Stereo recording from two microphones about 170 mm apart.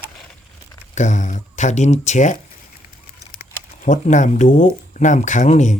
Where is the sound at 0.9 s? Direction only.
45° left (ahead or behind).